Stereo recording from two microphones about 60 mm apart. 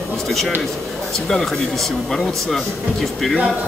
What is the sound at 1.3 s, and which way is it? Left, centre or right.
Speech, centre.